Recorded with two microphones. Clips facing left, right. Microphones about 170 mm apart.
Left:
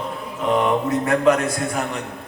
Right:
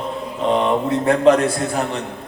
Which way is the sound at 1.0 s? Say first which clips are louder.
Right 5 dB; 30° right (ahead or behind).